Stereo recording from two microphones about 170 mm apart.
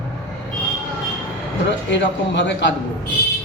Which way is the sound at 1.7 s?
90° left.